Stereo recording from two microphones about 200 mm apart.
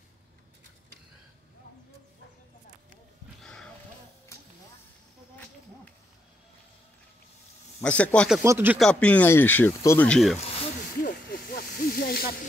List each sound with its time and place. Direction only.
7.8 s speech: 5° left (ahead or behind)
8.4 s speech: 10° right (ahead or behind)
8.7 s speech: 5° left (ahead or behind)
11.0 s snake: 45° left (ahead or behind)